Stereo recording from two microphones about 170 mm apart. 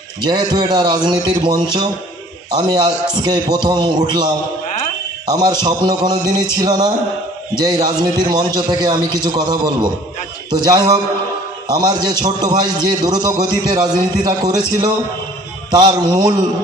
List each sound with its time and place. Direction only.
0.2 s a man's voice: 25° right (ahead or behind)
15.7 s a man's voice: 25° right (ahead or behind)